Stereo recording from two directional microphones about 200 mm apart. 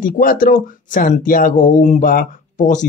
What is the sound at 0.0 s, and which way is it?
Speech, 45° left (ahead or behind).